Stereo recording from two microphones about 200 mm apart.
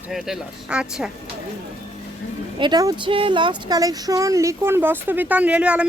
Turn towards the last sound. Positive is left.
turn(degrees=-5)  # may be behind; listen again after turning